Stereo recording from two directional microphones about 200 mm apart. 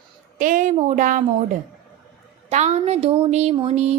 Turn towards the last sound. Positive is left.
turn(degrees=-35)  # may be behind; listen again after turning